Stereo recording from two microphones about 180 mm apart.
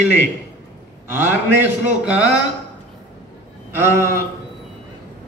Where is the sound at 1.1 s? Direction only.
10° right (ahead or behind).